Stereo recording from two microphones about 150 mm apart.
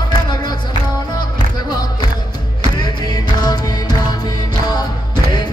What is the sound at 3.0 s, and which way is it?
Music, 25° left (ahead or behind).